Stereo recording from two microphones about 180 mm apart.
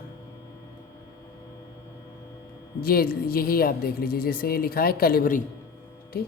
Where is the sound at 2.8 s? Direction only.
55° left (ahead or behind).